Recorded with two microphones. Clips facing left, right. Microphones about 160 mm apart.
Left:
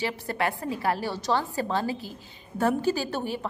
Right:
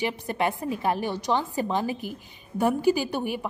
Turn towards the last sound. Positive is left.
turn(degrees=-15)  # may be behind; listen again after turning